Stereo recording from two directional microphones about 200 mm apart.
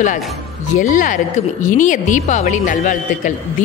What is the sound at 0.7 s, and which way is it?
Speech, 40° left (ahead or behind).